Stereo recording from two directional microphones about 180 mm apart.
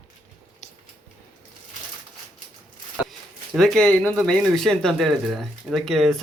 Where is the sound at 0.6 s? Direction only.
40° left (ahead or behind).